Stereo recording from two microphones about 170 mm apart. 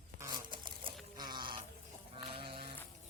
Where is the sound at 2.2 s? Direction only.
30° right (ahead or behind).